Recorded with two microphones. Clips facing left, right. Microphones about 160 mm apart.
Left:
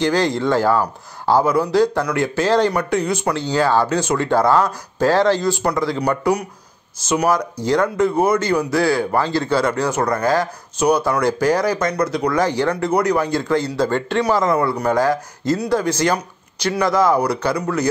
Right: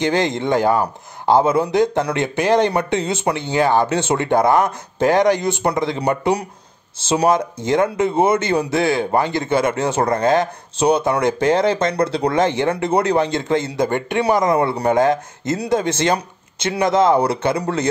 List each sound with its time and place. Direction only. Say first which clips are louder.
0.0 s speech: left 1 dB; 20° right (ahead or behind)